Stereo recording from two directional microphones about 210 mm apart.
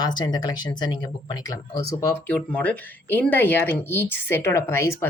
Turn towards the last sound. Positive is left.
turn(degrees=10)  # may be behind; listen again after turning